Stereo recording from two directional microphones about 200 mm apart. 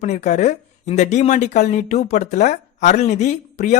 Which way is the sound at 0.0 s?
35° left (ahead or behind).